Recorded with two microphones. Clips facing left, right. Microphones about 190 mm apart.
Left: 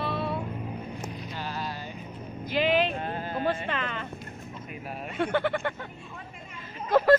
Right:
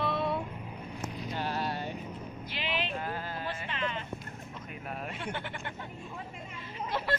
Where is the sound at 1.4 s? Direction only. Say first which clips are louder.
Right 2 dB; 60° right (ahead or behind).